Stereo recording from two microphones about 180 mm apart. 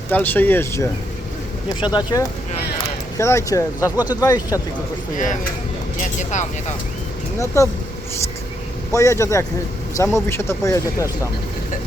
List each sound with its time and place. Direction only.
0.1 s speech: 10° left (ahead or behind)
3.9 s speech: 10° right (ahead or behind)
4.2 s speech: 20° left (ahead or behind)
5.1 s speech: 45° left (ahead or behind)
7.3 s speech: 15° left (ahead or behind)
8.9 s speech: 15° left (ahead or behind)